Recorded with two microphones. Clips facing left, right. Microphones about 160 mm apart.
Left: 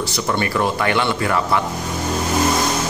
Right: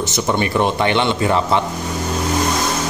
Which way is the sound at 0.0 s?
20° right (ahead or behind).